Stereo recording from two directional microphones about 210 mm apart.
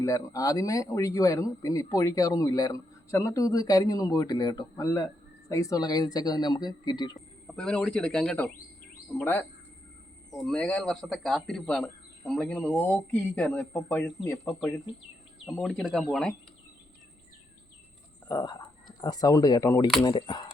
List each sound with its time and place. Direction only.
0.0 s speech: 15° left (ahead or behind)
7.4 s speech: 5° left (ahead or behind)
15.6 s speech: centre (ahead or behind)
18.3 s speech: 20° left (ahead or behind)